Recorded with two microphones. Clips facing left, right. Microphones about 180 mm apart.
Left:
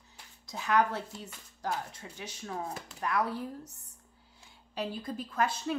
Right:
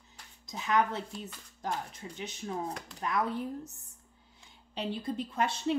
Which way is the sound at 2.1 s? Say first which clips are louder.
Right 2 dB; 20° right (ahead or behind).